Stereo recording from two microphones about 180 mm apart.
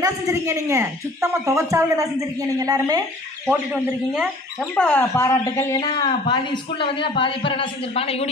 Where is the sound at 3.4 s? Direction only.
10° right (ahead or behind).